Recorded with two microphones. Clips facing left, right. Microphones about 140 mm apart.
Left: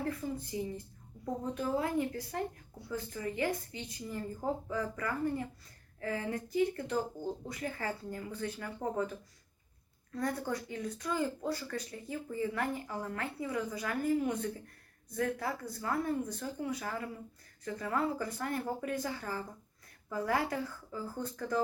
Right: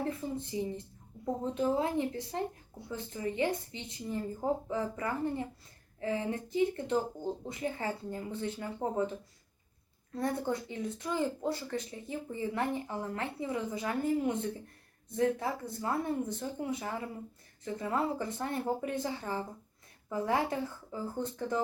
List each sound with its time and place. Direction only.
0.0 s speech: 25° right (ahead or behind)